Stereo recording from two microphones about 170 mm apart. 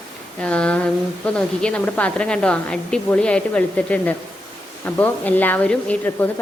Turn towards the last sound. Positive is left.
turn(degrees=10)  # may be behind; listen again after turning